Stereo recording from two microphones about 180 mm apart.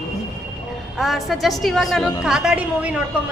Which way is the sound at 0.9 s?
Centre (ahead or behind).